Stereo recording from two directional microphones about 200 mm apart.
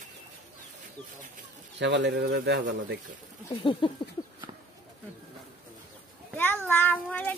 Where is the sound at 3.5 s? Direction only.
25° left (ahead or behind).